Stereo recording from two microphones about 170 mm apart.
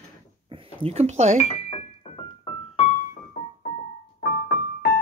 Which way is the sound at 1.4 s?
35° left (ahead or behind).